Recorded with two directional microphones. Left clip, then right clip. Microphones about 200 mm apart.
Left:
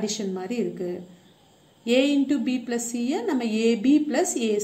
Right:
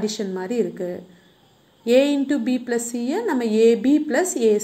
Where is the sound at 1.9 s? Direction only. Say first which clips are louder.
Right 4 dB; 15° right (ahead or behind).